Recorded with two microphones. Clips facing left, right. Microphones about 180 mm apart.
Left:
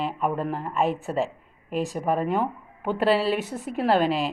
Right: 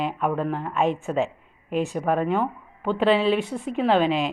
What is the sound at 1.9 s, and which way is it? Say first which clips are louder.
Speech: right 1 dB; 5° left (ahead or behind).